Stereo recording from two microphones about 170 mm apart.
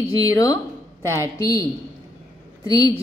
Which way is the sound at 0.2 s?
20° left (ahead or behind).